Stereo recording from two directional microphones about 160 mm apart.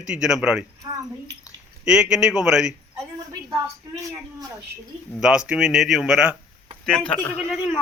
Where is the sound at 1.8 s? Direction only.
5° right (ahead or behind).